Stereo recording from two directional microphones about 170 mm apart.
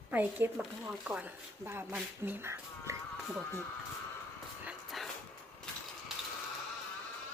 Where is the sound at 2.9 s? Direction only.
15° right (ahead or behind).